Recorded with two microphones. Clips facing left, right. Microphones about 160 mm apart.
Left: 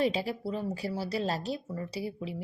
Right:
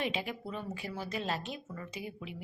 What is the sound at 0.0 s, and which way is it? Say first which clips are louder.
A woman's voice: left 7 dB; 35° left (ahead or behind).